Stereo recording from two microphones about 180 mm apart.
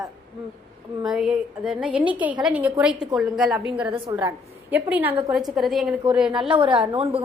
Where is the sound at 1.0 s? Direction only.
Centre (ahead or behind).